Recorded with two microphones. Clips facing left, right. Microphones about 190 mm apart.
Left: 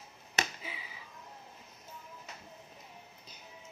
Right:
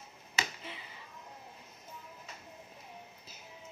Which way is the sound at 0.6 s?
Centre (ahead or behind).